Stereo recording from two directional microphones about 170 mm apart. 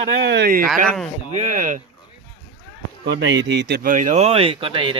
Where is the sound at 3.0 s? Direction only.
90° right.